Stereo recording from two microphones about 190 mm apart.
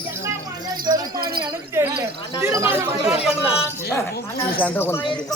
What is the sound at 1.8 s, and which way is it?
Speech, 10° right (ahead or behind).